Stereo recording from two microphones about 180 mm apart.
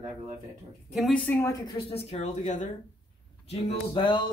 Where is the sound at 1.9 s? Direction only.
40° left (ahead or behind).